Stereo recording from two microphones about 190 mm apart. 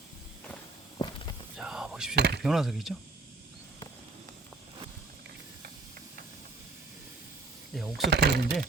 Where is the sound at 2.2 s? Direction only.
60° right (ahead or behind).